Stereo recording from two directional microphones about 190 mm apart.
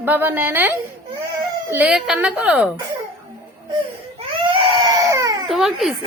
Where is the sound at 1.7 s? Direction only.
5° right (ahead or behind).